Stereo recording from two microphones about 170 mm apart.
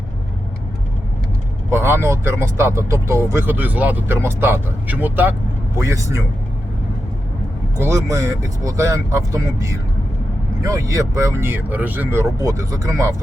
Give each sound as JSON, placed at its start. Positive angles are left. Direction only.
{"t": 1.7, "sound": "speech", "side_deg": -15}
{"t": 7.8, "sound": "speech", "side_deg": -15}